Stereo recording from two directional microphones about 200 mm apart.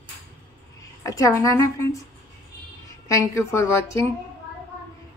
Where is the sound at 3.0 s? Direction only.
15° left (ahead or behind).